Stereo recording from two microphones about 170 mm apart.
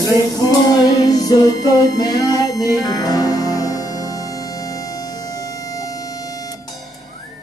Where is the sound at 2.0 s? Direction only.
20° left (ahead or behind).